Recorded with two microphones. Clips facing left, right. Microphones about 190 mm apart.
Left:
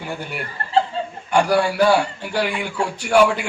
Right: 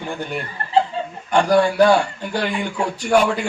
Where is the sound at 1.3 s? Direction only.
10° left (ahead or behind).